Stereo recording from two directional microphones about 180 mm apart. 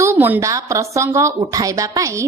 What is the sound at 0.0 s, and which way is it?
A woman's voice, 15° right (ahead or behind).